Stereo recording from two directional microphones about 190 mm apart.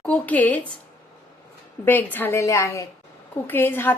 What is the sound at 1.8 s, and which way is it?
A woman's voice, 10° left (ahead or behind).